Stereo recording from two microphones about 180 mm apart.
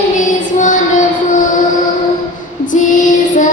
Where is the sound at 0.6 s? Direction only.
45° left (ahead or behind).